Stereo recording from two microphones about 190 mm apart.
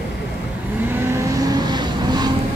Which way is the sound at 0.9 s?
15° right (ahead or behind).